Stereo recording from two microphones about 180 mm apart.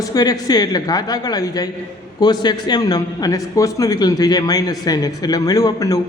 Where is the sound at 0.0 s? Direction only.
20° left (ahead or behind).